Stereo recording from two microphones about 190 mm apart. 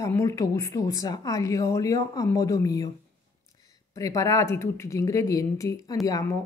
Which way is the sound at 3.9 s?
15° left (ahead or behind).